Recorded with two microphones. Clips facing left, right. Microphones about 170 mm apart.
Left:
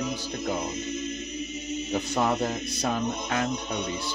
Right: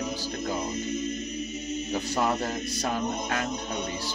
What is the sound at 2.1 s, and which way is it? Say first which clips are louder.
Speech: left 2 dB; 20° left (ahead or behind).